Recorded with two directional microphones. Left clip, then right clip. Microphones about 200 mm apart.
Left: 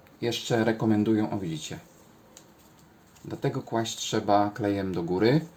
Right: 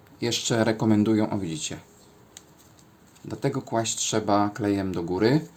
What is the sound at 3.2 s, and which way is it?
Speech, 25° right (ahead or behind).